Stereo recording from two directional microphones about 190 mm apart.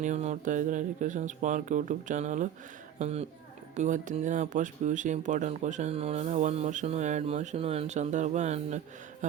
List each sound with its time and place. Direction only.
0.0 s speech: 35° right (ahead or behind)